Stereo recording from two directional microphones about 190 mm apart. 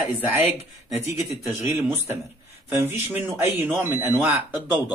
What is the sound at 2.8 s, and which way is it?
Speech, 10° right (ahead or behind).